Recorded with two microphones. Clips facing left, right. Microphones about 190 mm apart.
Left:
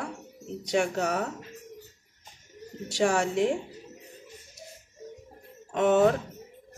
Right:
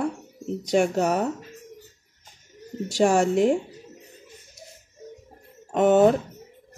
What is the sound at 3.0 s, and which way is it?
Speech, 45° right (ahead or behind).